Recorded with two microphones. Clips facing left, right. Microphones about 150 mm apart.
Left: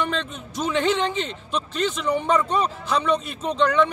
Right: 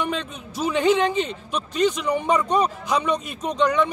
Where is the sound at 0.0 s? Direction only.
10° right (ahead or behind).